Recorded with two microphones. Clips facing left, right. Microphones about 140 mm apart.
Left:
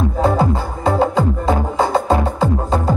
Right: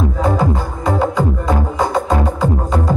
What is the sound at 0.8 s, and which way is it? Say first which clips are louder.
Music: left 1 dB; 30° left (ahead or behind).